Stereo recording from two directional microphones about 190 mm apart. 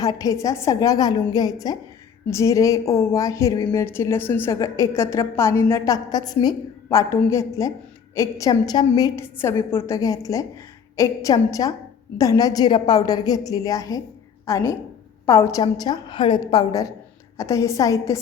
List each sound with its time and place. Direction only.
0.0 s a woman's voice: 20° left (ahead or behind)